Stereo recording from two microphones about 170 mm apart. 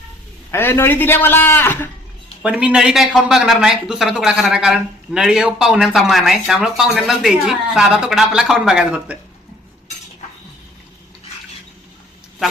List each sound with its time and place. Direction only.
0.5 s a man's voice: 15° left (ahead or behind)
2.4 s speech: 5° right (ahead or behind)